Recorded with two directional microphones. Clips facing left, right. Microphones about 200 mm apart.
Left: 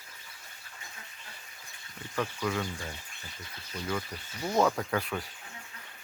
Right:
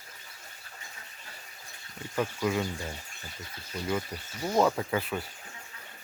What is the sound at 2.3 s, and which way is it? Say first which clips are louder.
Speech: right 3 dB; 20° right (ahead or behind).